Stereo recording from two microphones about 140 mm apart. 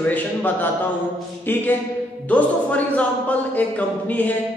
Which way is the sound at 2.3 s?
10° left (ahead or behind).